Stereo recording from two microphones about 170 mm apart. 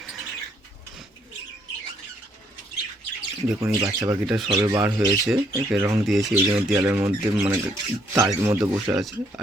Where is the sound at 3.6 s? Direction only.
20° right (ahead or behind).